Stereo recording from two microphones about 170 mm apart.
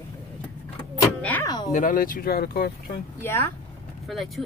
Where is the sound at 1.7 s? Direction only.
55° left (ahead or behind).